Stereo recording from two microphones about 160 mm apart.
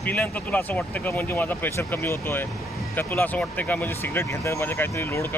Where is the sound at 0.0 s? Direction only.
10° left (ahead or behind).